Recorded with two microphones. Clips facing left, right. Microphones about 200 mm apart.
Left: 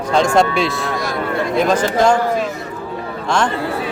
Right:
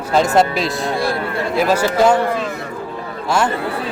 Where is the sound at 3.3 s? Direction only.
5° right (ahead or behind).